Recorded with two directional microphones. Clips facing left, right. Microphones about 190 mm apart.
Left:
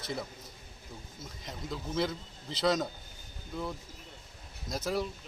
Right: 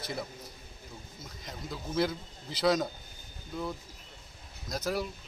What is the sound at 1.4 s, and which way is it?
A man's voice, centre (ahead or behind).